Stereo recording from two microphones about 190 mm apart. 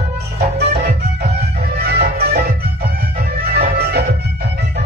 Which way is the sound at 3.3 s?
55° right (ahead or behind).